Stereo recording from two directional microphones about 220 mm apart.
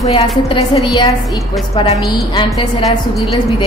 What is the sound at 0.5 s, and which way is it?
Speech, 20° left (ahead or behind).